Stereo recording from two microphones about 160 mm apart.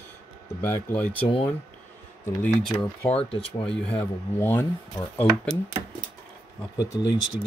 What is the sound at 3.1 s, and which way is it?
Speech, 35° left (ahead or behind).